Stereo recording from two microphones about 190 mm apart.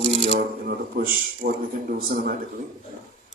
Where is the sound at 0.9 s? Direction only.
45° right (ahead or behind).